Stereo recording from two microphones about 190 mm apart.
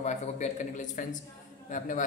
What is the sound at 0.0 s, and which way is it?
A man's voice, 40° left (ahead or behind).